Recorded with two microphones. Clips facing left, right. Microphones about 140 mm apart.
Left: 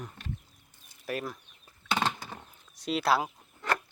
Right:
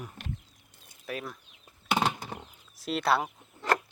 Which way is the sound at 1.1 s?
Centre (ahead or behind).